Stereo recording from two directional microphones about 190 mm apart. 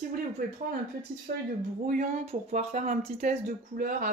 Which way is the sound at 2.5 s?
40° right (ahead or behind).